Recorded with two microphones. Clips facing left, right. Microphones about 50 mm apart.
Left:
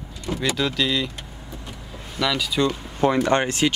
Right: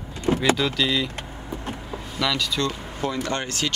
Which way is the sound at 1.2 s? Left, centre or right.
Right.